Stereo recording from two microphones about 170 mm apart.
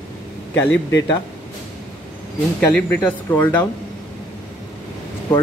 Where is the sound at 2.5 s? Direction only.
5° left (ahead or behind).